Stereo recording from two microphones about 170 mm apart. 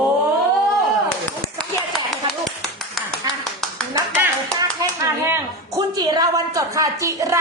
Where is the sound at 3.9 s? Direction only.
10° right (ahead or behind).